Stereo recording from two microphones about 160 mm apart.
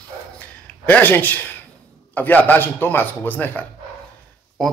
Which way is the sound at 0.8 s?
10° left (ahead or behind).